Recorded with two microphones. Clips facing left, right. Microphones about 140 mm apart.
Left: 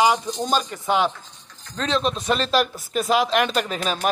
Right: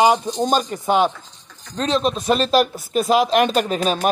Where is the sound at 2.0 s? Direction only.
10° right (ahead or behind).